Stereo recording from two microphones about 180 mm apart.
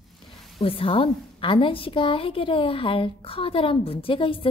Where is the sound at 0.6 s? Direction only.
30° left (ahead or behind).